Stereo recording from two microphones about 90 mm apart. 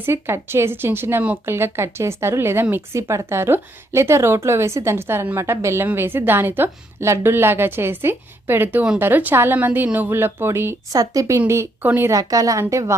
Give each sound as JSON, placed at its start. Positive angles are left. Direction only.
{"t": 0.0, "sound": "speech", "side_deg": -25}
{"t": 10.9, "sound": "a woman's voice", "side_deg": -40}
{"t": 12.1, "sound": "a woman's voice", "side_deg": -40}